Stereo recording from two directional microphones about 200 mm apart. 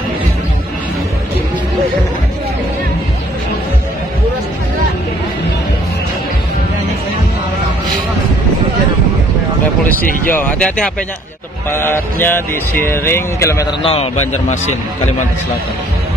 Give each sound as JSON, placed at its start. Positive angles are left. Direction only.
{"t": 10.3, "sound": "speech", "side_deg": 5}
{"t": 13.8, "sound": "a man's voice", "side_deg": 30}